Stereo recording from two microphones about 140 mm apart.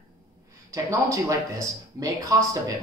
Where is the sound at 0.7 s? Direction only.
20° right (ahead or behind).